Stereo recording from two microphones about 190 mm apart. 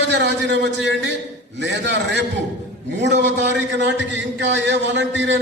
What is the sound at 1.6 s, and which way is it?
A man's voice, 65° right (ahead or behind).